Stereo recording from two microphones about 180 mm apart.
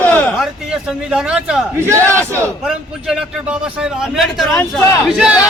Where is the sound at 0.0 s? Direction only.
10° left (ahead or behind).